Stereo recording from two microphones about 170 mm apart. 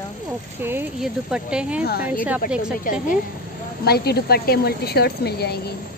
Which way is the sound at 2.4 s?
60° left (ahead or behind).